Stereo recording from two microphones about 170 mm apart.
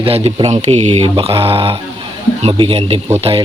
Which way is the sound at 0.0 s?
35° right (ahead or behind).